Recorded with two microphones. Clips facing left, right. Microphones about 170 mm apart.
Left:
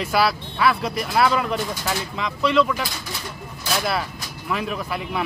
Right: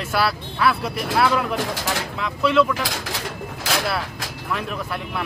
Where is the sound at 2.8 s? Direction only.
90° right.